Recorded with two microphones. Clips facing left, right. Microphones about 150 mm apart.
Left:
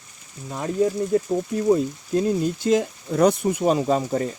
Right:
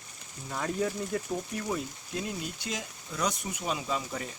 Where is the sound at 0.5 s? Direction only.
20° left (ahead or behind).